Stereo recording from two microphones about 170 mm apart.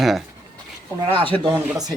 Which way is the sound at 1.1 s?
30° right (ahead or behind).